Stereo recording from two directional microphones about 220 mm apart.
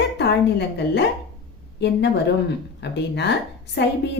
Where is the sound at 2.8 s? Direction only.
50° left (ahead or behind).